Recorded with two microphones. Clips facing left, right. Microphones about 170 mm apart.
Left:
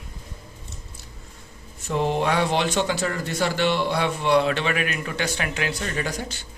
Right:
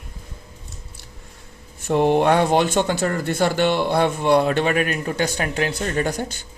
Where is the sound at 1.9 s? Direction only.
60° right (ahead or behind).